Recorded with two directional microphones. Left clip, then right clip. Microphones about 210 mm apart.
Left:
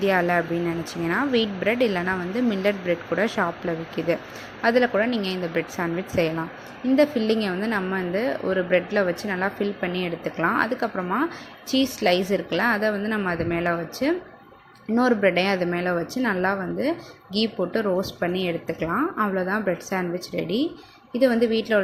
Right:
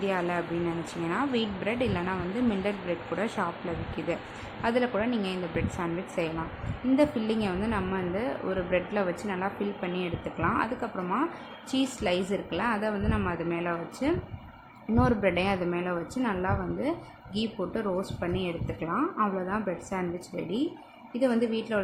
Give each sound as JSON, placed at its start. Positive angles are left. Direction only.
{"t": 0.0, "sound": "a woman's voice", "side_deg": 20}
{"t": 4.6, "sound": "a woman's voice", "side_deg": 15}